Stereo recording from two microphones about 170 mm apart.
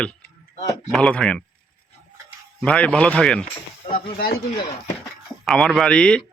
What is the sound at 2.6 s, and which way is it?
Speech, 5° left (ahead or behind).